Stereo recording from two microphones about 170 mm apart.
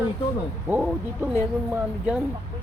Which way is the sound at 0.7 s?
10° right (ahead or behind).